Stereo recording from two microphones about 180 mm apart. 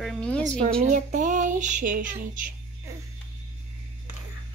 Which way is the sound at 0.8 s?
45° right (ahead or behind).